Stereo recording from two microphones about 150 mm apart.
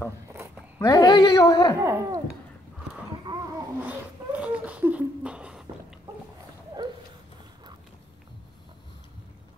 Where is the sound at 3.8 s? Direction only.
10° right (ahead or behind).